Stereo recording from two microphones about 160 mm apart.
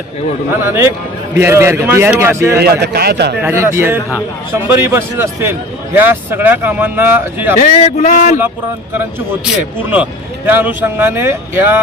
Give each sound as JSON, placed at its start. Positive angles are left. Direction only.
{"t": 0.6, "sound": "a man's voice", "side_deg": -15}
{"t": 2.6, "sound": "a man's voice", "side_deg": -80}
{"t": 3.4, "sound": "a man's voice", "side_deg": -15}
{"t": 7.6, "sound": "a man's voice", "side_deg": 50}
{"t": 9.9, "sound": "a man's voice", "side_deg": -10}